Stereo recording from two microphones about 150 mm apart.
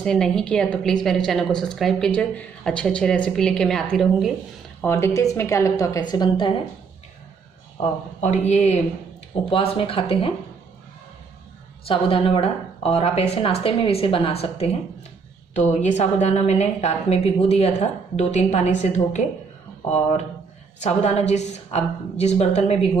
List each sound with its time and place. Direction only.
0.0 s a woman's voice: 5° left (ahead or behind)
4.8 s a woman's voice: 20° left (ahead or behind)
8.2 s a woman's voice: 50° left (ahead or behind)
9.5 s a woman's voice: 40° left (ahead or behind)
11.8 s a woman's voice: 40° left (ahead or behind)
15.7 s a woman's voice: 50° left (ahead or behind)
20.8 s a woman's voice: 45° left (ahead or behind)